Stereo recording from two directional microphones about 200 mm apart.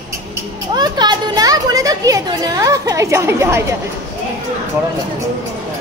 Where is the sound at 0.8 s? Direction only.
20° right (ahead or behind).